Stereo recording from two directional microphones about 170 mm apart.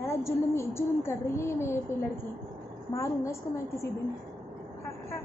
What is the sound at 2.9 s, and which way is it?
Speech, 15° left (ahead or behind).